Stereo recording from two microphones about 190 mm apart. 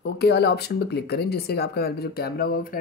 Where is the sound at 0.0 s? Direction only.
60° left (ahead or behind).